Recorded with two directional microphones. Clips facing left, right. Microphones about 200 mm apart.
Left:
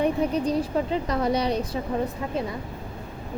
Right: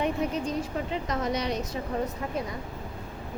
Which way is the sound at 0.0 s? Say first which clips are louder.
Left 5 dB; 35° left (ahead or behind).